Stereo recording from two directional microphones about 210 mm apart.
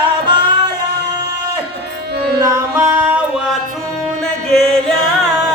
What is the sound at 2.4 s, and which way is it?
Music, 15° right (ahead or behind).